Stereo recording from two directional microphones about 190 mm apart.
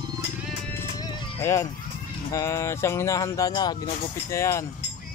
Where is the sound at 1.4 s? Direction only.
15° left (ahead or behind).